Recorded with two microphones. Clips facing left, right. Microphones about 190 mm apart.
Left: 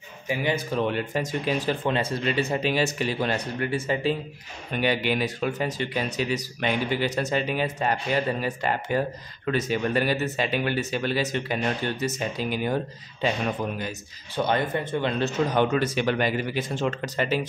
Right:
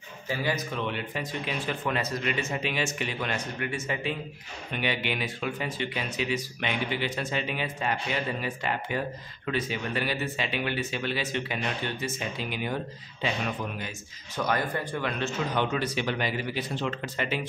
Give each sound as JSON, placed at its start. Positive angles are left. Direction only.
{"t": 0.3, "sound": "speech", "side_deg": 20}
{"t": 0.7, "sound": "speech", "side_deg": 45}
{"t": 1.9, "sound": "speech", "side_deg": 30}
{"t": 13.7, "sound": "speech", "side_deg": 40}
{"t": 14.4, "sound": "speech", "side_deg": 25}